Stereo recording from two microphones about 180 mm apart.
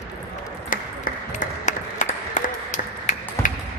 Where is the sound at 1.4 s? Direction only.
45° left (ahead or behind).